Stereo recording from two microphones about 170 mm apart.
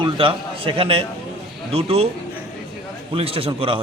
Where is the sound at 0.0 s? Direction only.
30° right (ahead or behind).